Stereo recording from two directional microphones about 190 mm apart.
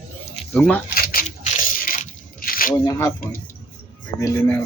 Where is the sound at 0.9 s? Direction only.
50° left (ahead or behind).